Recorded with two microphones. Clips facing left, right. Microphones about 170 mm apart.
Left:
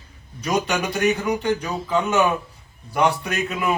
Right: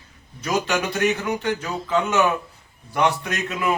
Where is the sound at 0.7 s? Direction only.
10° left (ahead or behind).